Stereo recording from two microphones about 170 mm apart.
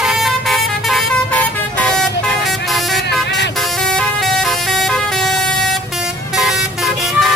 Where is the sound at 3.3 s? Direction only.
90° left.